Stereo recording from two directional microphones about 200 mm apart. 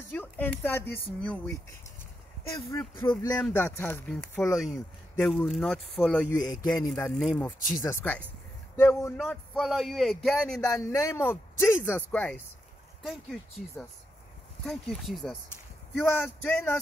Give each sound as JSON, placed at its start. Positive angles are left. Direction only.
{"t": 0.1, "sound": "speech", "side_deg": 10}
{"t": 3.0, "sound": "a man's voice", "side_deg": 20}
{"t": 3.3, "sound": "speech", "side_deg": 10}
{"t": 4.5, "sound": "speech", "side_deg": 0}
{"t": 6.3, "sound": "a man's voice", "side_deg": 20}
{"t": 6.9, "sound": "speech", "side_deg": 0}
{"t": 10.6, "sound": "speech", "side_deg": 15}